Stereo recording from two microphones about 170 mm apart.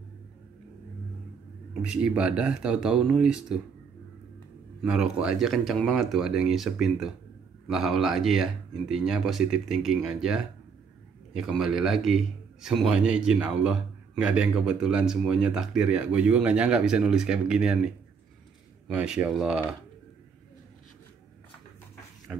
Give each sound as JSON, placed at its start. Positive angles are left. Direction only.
{"t": 1.7, "sound": "a man's voice", "side_deg": -5}
{"t": 4.8, "sound": "a man's voice", "side_deg": -5}
{"t": 22.3, "sound": "rub", "side_deg": -5}